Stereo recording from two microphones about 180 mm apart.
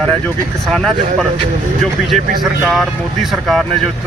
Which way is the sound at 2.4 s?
Centre (ahead or behind).